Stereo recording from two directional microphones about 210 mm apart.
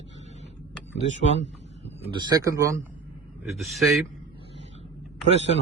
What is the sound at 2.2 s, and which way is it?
Speech, 15° right (ahead or behind).